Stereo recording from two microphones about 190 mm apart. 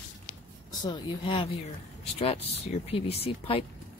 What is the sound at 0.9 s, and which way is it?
Speech, 25° left (ahead or behind).